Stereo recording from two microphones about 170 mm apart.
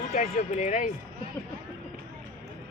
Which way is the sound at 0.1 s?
45° left (ahead or behind).